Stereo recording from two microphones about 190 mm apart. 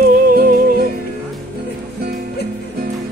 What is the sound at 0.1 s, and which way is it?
Music, 45° right (ahead or behind).